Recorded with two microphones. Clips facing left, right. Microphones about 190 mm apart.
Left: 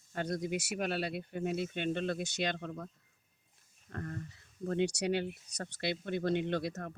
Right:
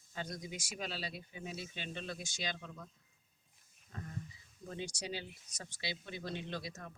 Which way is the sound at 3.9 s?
65° left (ahead or behind).